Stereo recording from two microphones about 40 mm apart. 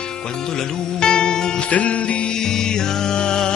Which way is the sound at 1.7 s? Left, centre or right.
Left.